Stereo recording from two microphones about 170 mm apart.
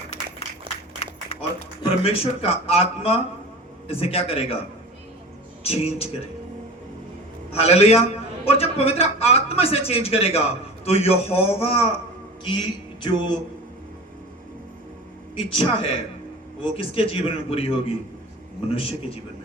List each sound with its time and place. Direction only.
1.8 s a man's voice: 35° left (ahead or behind)
5.6 s a man's voice: 35° left (ahead or behind)
7.5 s a man's voice: 35° left (ahead or behind)
15.4 s a man's voice: 30° left (ahead or behind)